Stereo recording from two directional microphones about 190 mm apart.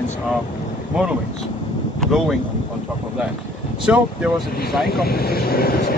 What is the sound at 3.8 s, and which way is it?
Speech, 5° right (ahead or behind).